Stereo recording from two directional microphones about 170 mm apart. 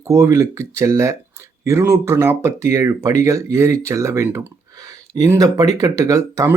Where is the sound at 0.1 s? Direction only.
15° right (ahead or behind).